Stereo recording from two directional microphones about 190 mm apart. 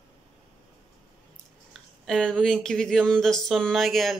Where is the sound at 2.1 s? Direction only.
5° left (ahead or behind).